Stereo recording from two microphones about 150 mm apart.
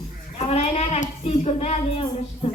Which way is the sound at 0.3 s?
40° left (ahead or behind).